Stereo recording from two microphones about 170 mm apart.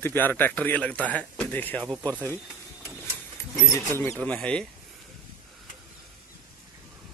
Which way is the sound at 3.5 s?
15° left (ahead or behind).